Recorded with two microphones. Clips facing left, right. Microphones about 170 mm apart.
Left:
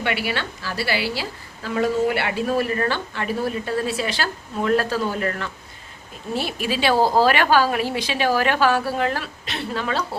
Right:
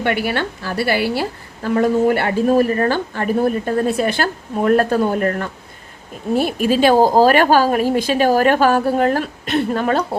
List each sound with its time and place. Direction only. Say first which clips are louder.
0.0 s a woman's voice: right 6 dB; 50° right (ahead or behind)